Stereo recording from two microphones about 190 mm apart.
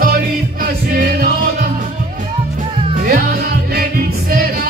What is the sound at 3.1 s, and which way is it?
Music, 50° right (ahead or behind).